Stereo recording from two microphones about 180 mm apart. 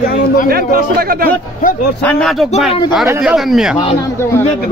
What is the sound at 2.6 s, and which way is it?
Speech, 30° left (ahead or behind).